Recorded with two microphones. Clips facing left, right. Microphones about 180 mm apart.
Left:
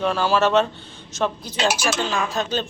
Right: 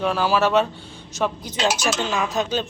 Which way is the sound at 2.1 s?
20° right (ahead or behind).